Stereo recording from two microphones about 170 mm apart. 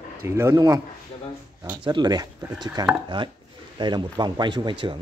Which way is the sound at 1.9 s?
25° right (ahead or behind).